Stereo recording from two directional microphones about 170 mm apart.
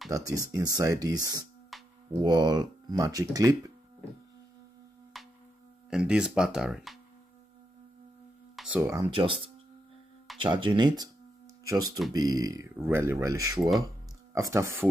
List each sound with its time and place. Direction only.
0.1 s speech: 20° right (ahead or behind)
1.7 s music: centre (ahead or behind)
2.2 s speech: 25° right (ahead or behind)
5.1 s music: centre (ahead or behind)
5.9 s speech: 5° right (ahead or behind)
8.5 s a sound: 5° right (ahead or behind)
9.0 s speech: 30° right (ahead or behind)
10.4 s speech: 30° right (ahead or behind)
12.1 s speech: 20° right (ahead or behind)
13.6 s speech: centre (ahead or behind)
14.3 s speech: 20° right (ahead or behind)